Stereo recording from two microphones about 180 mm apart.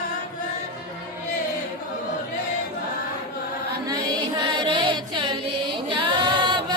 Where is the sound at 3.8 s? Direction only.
20° right (ahead or behind).